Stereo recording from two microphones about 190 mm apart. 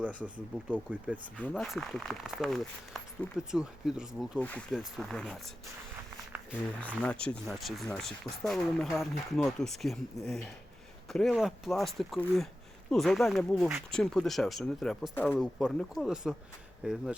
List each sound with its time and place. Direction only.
0.0 s speech: 5° right (ahead or behind)
1.4 s speech: 5° left (ahead or behind)
4.4 s speech: 10° left (ahead or behind)
6.5 s speech: 10° left (ahead or behind)